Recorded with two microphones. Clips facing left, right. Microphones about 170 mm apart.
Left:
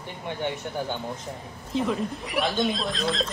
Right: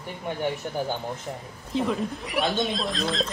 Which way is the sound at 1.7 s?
Centre (ahead or behind).